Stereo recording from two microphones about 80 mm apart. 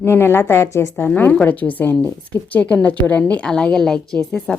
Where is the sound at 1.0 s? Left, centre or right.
Left.